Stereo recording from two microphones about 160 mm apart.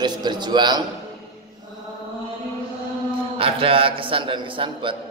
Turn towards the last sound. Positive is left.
turn(degrees=-30)  # may be behind; listen again after turning